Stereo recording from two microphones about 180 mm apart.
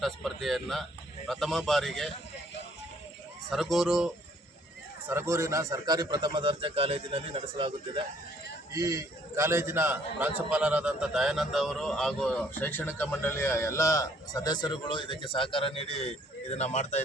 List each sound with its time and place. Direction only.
0.0 s a man's voice: centre (ahead or behind)
3.5 s a man's voice: centre (ahead or behind)
5.0 s a man's voice: 15° right (ahead or behind); by 7.7 s 30° right (ahead or behind)
8.7 s a man's voice: 20° right (ahead or behind); by 17.0 s 40° left (ahead or behind)